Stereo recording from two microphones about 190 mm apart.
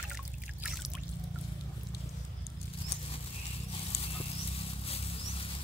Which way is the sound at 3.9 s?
30° left (ahead or behind).